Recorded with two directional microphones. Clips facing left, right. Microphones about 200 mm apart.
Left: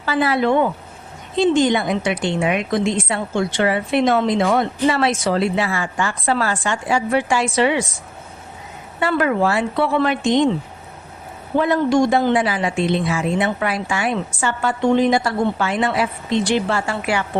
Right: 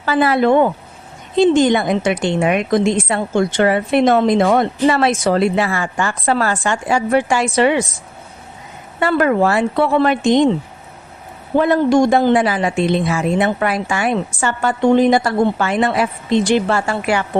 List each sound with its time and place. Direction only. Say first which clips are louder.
0.0 s a woman's voice: right 4 dB; 50° right (ahead or behind)
9.0 s a woman's voice: right 3 dB; 45° right (ahead or behind)
11.5 s a woman's voice: right 3 dB; 50° right (ahead or behind)